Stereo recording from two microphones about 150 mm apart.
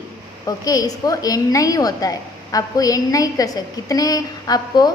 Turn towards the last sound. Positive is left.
turn(degrees=25)  # may be behind; listen again after turning